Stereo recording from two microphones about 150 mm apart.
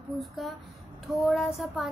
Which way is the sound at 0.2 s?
Centre (ahead or behind).